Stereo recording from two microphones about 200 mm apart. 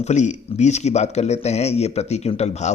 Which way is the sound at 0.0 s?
35° left (ahead or behind).